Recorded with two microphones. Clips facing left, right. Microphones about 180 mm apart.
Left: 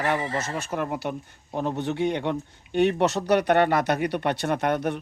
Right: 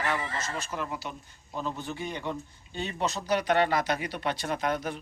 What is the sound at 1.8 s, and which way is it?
Speech, 75° left (ahead or behind).